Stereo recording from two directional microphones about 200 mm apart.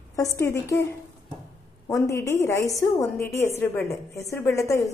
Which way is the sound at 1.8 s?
15° left (ahead or behind).